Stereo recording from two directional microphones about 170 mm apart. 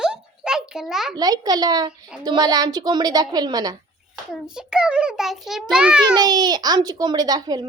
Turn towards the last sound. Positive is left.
turn(degrees=-25)  # may be behind; listen again after turning